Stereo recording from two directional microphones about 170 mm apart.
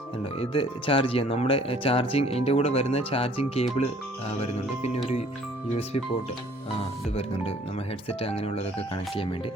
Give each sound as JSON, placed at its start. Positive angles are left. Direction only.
{"t": 0.3, "sound": "speech", "side_deg": 30}
{"t": 8.2, "sound": "speech", "side_deg": 35}